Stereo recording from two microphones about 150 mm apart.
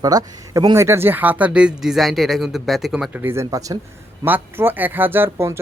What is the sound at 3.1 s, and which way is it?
Speech, 15° right (ahead or behind).